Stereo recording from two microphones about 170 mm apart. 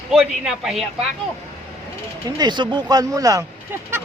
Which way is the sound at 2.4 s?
25° right (ahead or behind).